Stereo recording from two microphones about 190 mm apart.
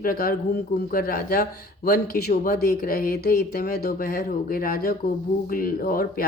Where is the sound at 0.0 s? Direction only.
50° left (ahead or behind).